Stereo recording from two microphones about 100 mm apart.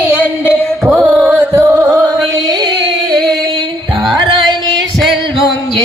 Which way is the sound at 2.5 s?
45° right (ahead or behind).